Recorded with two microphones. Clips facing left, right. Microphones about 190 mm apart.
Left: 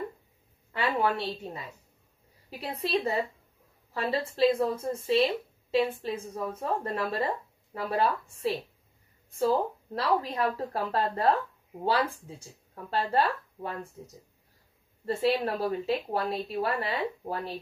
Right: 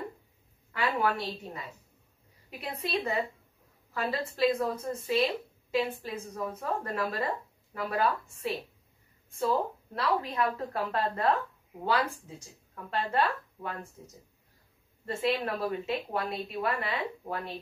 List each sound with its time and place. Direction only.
0.7 s a woman's voice: 30° left (ahead or behind)
12.9 s speech: 35° left (ahead or behind)
15.0 s speech: 35° left (ahead or behind)